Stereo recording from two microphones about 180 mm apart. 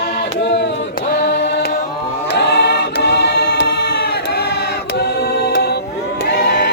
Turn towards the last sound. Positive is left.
turn(degrees=65)  # may be behind; listen again after turning